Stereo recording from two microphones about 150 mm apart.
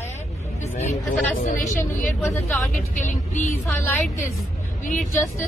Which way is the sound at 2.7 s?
60° left (ahead or behind).